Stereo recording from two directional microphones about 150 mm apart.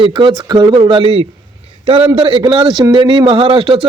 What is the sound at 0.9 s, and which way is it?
Speech, 40° right (ahead or behind).